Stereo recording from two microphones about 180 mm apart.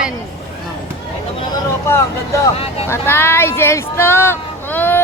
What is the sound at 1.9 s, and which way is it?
Vehicle, 15° left (ahead or behind).